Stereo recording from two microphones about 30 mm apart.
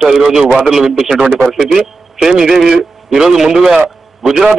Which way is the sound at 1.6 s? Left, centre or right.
Centre.